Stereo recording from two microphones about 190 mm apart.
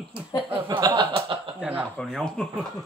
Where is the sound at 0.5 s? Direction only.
20° right (ahead or behind).